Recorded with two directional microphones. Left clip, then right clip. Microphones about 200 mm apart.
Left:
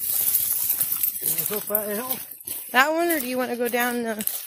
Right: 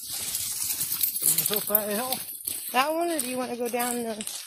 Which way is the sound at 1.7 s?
65° right (ahead or behind).